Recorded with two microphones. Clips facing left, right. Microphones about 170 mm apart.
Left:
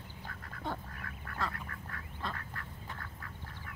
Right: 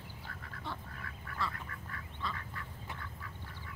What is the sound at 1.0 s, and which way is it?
Duck, 50° left (ahead or behind).